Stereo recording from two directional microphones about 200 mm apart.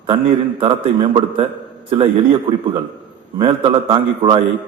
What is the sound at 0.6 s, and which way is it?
A man's voice, 25° right (ahead or behind).